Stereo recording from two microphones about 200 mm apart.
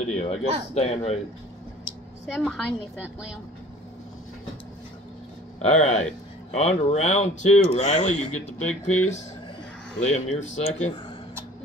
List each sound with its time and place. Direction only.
0.1 s speech: 30° left (ahead or behind)
2.2 s a woman's voice: centre (ahead or behind)
5.6 s speech: 35° left (ahead or behind)